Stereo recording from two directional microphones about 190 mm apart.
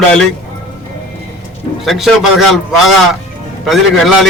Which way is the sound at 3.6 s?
Centre (ahead or behind).